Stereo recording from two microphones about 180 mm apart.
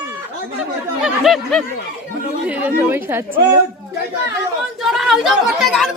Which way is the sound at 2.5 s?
10° right (ahead or behind).